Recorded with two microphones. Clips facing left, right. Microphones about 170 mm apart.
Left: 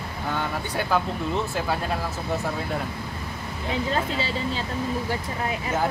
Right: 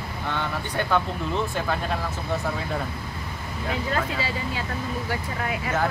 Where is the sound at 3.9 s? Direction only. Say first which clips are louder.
Even; 25° left (ahead or behind).